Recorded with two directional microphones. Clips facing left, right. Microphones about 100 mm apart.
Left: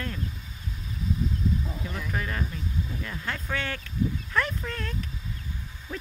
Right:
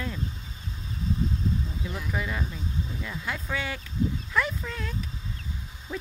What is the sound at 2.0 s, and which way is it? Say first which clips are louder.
Speech: even; 15° right (ahead or behind).